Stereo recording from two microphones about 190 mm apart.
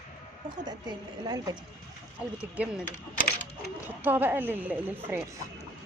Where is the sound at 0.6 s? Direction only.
20° right (ahead or behind).